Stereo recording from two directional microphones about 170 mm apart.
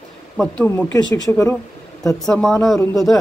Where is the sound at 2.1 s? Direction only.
5° left (ahead or behind).